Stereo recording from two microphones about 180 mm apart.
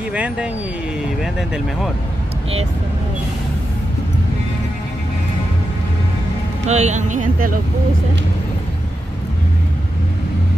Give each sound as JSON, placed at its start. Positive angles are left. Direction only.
{"t": 0.1, "sound": "speech", "side_deg": -5}
{"t": 6.7, "sound": "speech", "side_deg": -40}